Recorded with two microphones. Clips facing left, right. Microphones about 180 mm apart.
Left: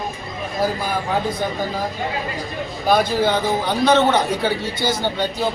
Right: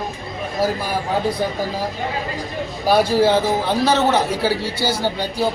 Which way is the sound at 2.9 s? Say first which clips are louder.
Right 2 dB; 5° right (ahead or behind).